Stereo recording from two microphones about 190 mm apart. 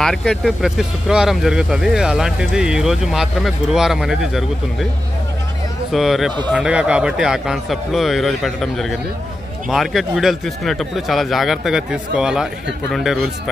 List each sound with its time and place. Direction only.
0.0 s speech: 5° left (ahead or behind)
5.9 s speech: centre (ahead or behind)